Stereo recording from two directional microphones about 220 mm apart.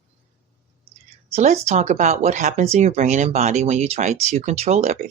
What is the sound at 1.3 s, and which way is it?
Speech, 30° right (ahead or behind).